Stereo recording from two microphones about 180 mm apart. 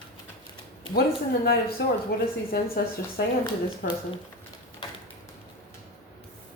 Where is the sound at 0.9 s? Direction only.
65° left (ahead or behind).